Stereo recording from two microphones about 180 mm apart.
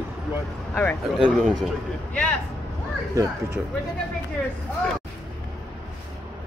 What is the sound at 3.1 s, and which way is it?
Speech, 15° right (ahead or behind).